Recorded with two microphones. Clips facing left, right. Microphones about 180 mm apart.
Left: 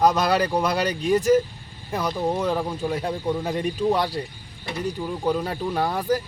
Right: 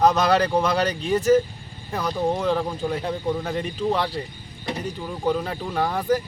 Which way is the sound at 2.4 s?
10° left (ahead or behind).